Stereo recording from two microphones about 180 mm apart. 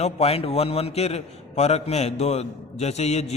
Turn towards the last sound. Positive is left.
turn(degrees=35)  # may be behind; listen again after turning